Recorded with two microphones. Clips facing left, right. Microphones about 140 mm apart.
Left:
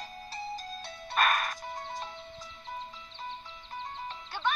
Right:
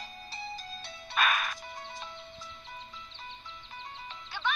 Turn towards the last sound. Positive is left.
turn(degrees=45)  # may be behind; listen again after turning